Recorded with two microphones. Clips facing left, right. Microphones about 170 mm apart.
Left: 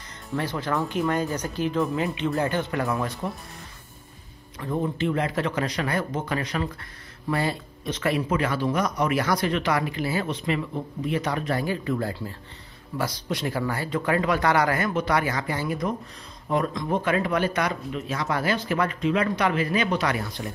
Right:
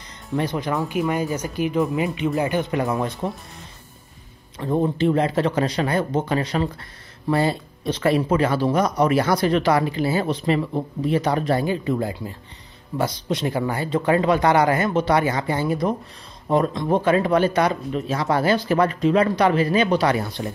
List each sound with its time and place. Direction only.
0.4 s speech: 15° right (ahead or behind)
4.6 s speech: 30° right (ahead or behind)